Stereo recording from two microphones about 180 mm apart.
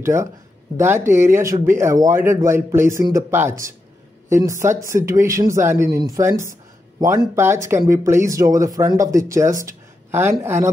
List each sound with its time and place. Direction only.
0.0 s speech: 15° right (ahead or behind)